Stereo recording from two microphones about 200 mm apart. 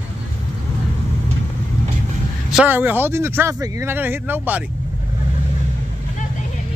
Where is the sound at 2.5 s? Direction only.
5° right (ahead or behind).